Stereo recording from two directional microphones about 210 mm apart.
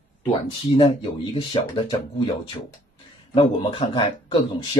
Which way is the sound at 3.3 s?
25° left (ahead or behind).